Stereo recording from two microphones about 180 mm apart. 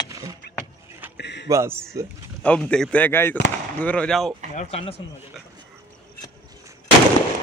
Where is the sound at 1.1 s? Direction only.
75° left (ahead or behind).